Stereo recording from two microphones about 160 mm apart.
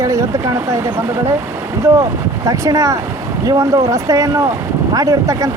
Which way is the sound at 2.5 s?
20° right (ahead or behind).